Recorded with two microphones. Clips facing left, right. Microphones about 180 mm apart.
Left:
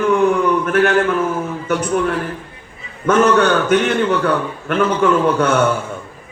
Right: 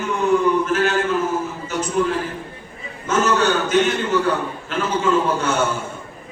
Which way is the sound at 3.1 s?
60° left (ahead or behind).